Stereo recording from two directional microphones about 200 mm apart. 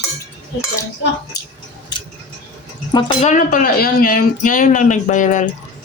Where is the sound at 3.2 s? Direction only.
40° left (ahead or behind).